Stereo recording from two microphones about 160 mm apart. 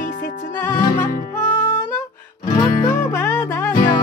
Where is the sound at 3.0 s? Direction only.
10° left (ahead or behind).